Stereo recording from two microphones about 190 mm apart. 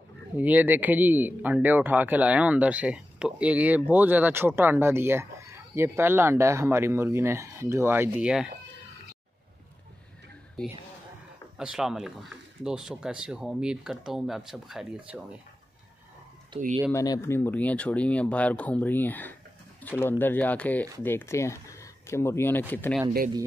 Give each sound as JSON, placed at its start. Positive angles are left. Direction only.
{"t": 0.4, "sound": "speech", "side_deg": -10}
{"t": 11.5, "sound": "speech", "side_deg": -5}
{"t": 16.5, "sound": "speech", "side_deg": -25}
{"t": 16.9, "sound": "speech", "side_deg": 15}